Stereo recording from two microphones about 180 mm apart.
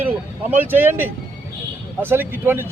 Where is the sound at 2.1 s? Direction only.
10° right (ahead or behind).